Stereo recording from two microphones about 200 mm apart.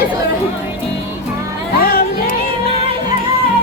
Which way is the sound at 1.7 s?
50° left (ahead or behind).